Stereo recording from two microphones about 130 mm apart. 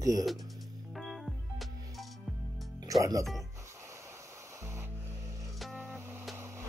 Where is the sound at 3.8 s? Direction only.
20° right (ahead or behind).